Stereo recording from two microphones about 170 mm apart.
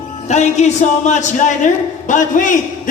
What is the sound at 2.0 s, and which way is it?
Speech, 50° left (ahead or behind).